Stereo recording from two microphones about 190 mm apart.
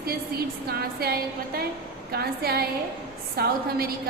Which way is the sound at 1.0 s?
55° right (ahead or behind).